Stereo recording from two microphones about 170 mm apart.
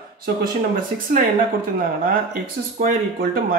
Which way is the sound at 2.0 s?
55° right (ahead or behind).